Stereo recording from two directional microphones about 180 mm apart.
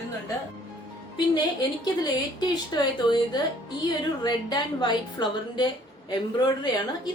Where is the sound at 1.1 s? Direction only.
25° left (ahead or behind).